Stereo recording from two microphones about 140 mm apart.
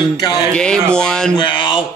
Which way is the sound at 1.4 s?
35° left (ahead or behind).